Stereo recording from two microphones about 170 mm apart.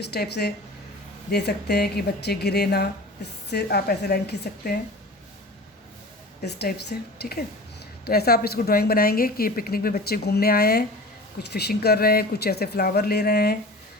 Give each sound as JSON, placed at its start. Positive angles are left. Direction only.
{"t": 0.0, "sound": "speech", "side_deg": 75}
{"t": 6.4, "sound": "speech", "side_deg": 75}